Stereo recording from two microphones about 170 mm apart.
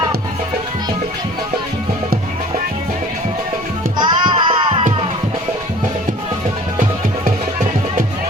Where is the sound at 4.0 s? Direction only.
25° right (ahead or behind).